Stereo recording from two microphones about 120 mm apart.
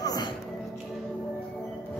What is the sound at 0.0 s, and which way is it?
Music, 35° left (ahead or behind).